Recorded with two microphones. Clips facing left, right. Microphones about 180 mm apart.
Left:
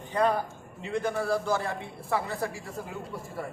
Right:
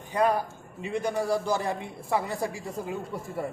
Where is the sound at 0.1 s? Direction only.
10° right (ahead or behind).